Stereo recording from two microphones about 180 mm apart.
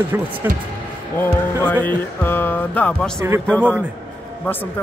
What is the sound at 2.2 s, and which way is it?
Speech, 10° left (ahead or behind).